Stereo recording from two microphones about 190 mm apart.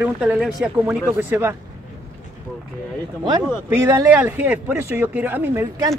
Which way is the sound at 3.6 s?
15° right (ahead or behind).